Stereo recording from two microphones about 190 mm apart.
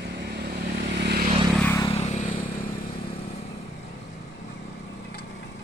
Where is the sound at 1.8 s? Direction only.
35° left (ahead or behind).